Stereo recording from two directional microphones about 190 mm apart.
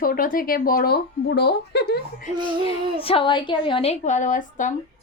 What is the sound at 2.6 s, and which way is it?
A woman's voice, 30° left (ahead or behind).